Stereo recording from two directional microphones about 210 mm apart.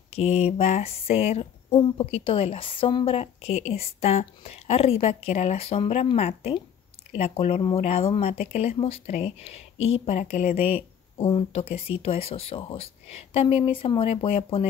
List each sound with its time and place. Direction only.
0.1 s speech: 30° left (ahead or behind)
9.8 s speech: 65° left (ahead or behind)
10.0 s speech: 30° left (ahead or behind)